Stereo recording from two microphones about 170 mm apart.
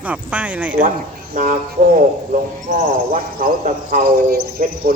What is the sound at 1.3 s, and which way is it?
Speech, 50° right (ahead or behind).